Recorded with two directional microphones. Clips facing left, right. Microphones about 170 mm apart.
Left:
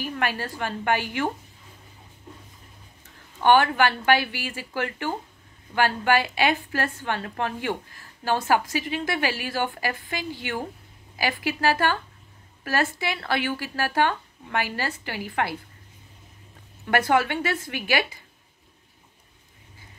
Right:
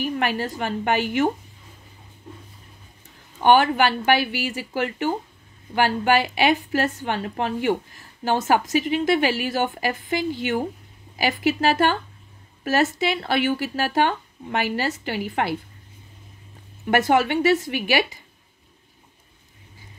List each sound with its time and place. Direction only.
0.0 s a woman's voice: 15° right (ahead or behind)
3.4 s a woman's voice: 15° right (ahead or behind)
16.8 s a woman's voice: 20° right (ahead or behind)